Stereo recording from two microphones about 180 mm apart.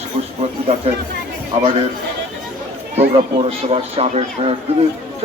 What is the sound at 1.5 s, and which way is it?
Speech, 35° right (ahead or behind).